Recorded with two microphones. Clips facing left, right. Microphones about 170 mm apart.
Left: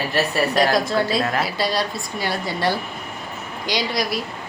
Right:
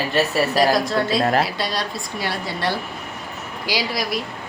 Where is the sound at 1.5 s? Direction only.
Centre (ahead or behind).